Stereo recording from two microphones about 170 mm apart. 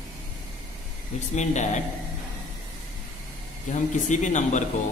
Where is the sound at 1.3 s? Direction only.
45° left (ahead or behind).